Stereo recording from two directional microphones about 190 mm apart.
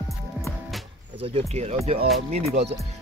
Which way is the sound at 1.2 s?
30° right (ahead or behind).